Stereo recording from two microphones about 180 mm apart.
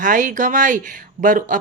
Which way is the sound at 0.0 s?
45° right (ahead or behind).